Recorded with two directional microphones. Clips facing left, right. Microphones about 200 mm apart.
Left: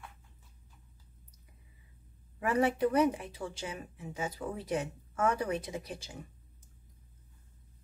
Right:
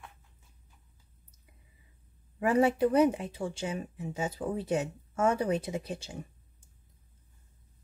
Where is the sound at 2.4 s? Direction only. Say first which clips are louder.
Right 4 dB; 30° right (ahead or behind).